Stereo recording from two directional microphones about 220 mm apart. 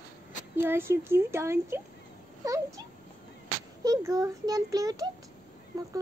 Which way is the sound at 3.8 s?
15° right (ahead or behind).